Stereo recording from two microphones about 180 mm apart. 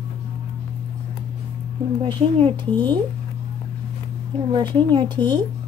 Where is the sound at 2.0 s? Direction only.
25° right (ahead or behind).